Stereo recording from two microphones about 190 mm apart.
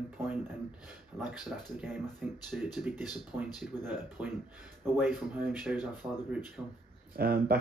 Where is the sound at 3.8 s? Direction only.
10° right (ahead or behind).